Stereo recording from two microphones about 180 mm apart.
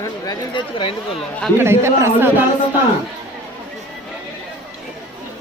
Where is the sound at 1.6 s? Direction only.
15° right (ahead or behind).